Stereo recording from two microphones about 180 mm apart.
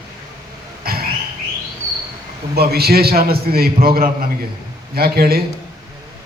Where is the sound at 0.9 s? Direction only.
55° right (ahead or behind).